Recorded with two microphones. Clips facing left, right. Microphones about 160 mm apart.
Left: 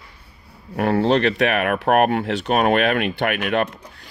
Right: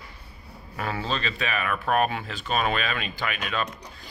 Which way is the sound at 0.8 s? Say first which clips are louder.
Left 12 dB; 65° left (ahead or behind).